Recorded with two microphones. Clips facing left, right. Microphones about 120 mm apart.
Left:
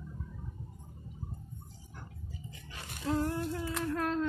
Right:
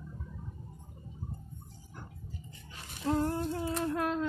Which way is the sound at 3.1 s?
30° right (ahead or behind).